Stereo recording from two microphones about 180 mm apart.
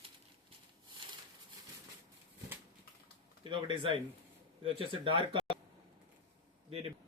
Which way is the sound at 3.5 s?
30° right (ahead or behind).